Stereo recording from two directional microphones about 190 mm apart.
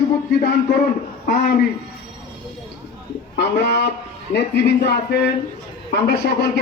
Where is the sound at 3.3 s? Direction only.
60° left (ahead or behind).